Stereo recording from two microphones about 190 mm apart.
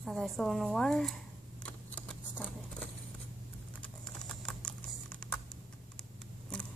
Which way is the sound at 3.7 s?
5° left (ahead or behind).